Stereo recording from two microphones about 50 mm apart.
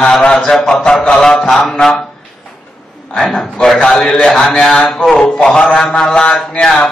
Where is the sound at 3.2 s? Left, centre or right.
Centre.